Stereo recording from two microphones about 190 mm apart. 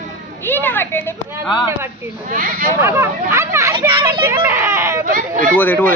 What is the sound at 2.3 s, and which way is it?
Speech, 45° right (ahead or behind).